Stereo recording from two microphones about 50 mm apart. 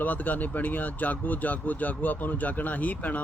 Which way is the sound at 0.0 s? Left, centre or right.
Left.